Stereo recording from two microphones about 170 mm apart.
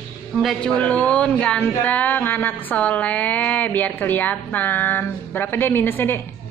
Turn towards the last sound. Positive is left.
turn(degrees=10)  # may be behind; listen again after turning